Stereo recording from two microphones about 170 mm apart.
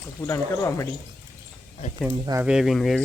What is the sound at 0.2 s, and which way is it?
Speech, 20° left (ahead or behind).